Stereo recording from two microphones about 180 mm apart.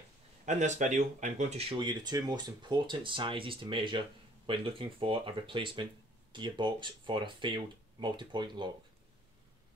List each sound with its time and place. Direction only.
0.5 s speech: 40° right (ahead or behind); by 8.6 s 25° right (ahead or behind)